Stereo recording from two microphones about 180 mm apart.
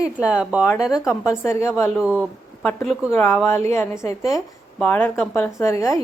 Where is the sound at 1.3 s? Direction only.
15° left (ahead or behind).